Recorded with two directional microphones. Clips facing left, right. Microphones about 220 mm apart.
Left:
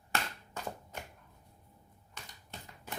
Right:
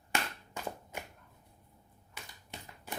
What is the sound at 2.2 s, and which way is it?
Typewriter, 10° right (ahead or behind).